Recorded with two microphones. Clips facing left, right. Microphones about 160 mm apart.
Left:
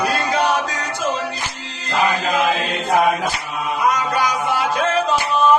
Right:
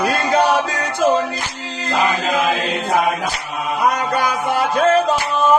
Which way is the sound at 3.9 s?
55° right (ahead or behind).